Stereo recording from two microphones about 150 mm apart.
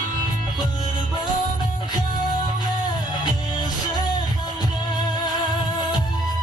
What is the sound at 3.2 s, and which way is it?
Music, 30° left (ahead or behind).